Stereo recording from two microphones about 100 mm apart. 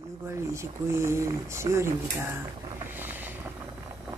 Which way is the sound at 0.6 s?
25° right (ahead or behind).